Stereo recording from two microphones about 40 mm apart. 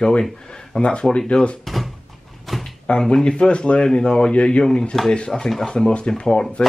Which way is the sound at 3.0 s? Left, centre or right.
Centre.